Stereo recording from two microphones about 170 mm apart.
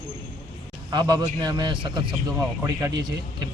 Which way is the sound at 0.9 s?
25° right (ahead or behind).